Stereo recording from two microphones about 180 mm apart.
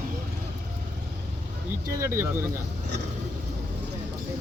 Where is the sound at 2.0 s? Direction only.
15° right (ahead or behind).